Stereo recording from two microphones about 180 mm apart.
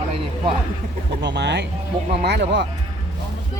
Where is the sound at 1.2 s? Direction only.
75° right (ahead or behind).